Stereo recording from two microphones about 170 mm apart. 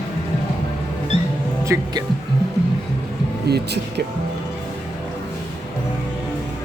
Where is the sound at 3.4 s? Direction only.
75° right (ahead or behind).